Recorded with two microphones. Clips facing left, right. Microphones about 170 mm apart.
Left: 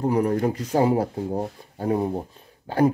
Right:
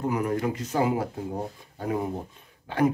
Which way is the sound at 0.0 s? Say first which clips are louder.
Left 5 dB; 35° left (ahead or behind).